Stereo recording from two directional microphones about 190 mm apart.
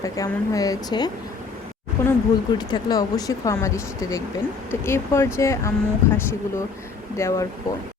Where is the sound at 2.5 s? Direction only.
20° left (ahead or behind).